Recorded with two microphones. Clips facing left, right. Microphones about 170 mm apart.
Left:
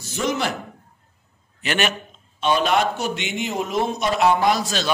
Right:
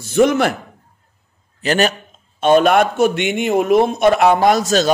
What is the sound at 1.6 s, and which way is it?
Speech, 40° right (ahead or behind).